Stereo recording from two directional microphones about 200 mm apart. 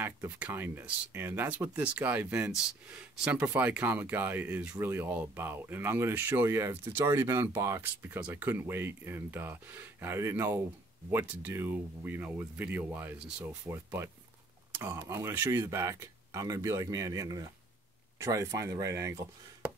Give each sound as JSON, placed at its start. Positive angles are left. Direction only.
{"t": 0.0, "sound": "speech", "side_deg": -10}